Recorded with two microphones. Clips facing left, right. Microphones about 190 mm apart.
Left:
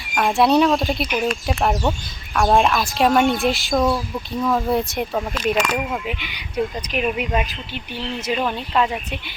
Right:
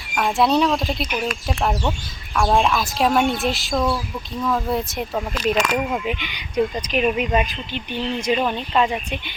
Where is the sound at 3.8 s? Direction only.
20° left (ahead or behind).